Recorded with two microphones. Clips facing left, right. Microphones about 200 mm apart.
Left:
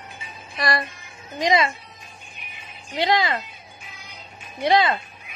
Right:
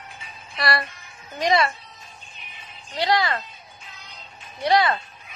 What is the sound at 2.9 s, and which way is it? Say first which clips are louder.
Speech: left 1 dB; 20° left (ahead or behind).